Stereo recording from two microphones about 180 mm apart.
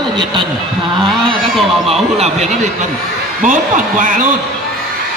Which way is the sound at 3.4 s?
45° right (ahead or behind).